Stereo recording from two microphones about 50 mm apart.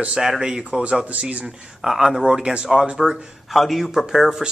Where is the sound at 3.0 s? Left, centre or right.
Centre.